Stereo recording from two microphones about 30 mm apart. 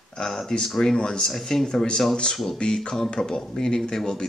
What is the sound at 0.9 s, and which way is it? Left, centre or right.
Speech, left.